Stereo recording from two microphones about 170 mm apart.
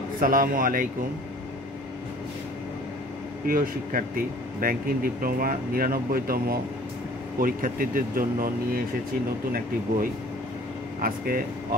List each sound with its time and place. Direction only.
0.2 s speech: 55° right (ahead or behind)
3.4 s speech: 55° right (ahead or behind)
11.0 s speech: 55° right (ahead or behind)